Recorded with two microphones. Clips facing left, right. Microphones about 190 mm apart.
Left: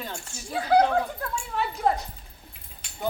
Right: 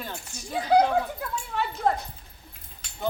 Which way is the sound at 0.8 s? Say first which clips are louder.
Even; 5° right (ahead or behind).